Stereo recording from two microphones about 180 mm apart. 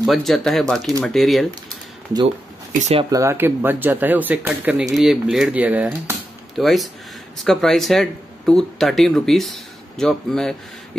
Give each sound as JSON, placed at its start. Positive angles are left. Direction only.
{"t": 0.0, "sound": "speech", "side_deg": 0}
{"t": 2.8, "sound": "speech", "side_deg": -35}
{"t": 3.1, "sound": "speech", "side_deg": -15}